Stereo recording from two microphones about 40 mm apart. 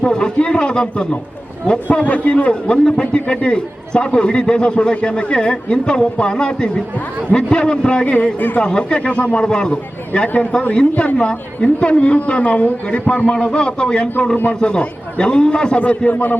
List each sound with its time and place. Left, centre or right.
0.0 s a woman's voice: centre
1.9 s a man's voice: left
2.4 s a woman's voice: left
8.0 s a man's voice: left
8.4 s speech: left
8.6 s a woman's voice: left
9.4 s a woman's voice: centre